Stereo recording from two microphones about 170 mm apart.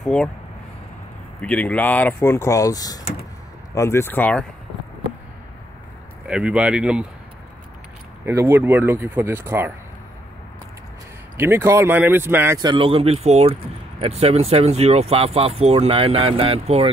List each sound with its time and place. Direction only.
0.0 s speech: 5° left (ahead or behind)
1.4 s speech: 5° left (ahead or behind)
6.2 s speech: 5° right (ahead or behind)
8.3 s speech: 15° right (ahead or behind)
11.3 s speech: 15° right (ahead or behind)
12.5 s speech: 30° right (ahead or behind)